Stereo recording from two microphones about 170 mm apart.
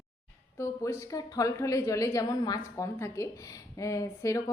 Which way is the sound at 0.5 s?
15° left (ahead or behind).